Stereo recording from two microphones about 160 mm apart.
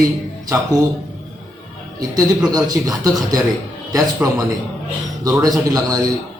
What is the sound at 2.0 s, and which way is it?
A man's voice, 25° right (ahead or behind).